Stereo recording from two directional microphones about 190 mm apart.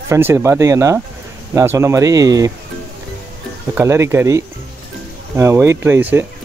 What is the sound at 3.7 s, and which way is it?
Speech, 15° right (ahead or behind).